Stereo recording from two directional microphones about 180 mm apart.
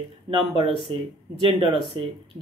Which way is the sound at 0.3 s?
30° right (ahead or behind).